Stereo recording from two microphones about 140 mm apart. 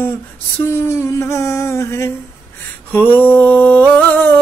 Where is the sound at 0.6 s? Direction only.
20° left (ahead or behind).